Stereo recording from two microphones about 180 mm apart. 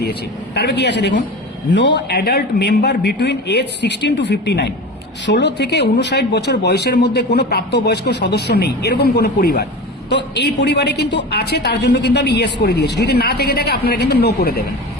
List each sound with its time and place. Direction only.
0.0 s a woman's voice: 65° left (ahead or behind)